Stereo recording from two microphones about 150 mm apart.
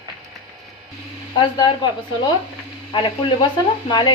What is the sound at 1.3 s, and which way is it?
Speech, 30° left (ahead or behind).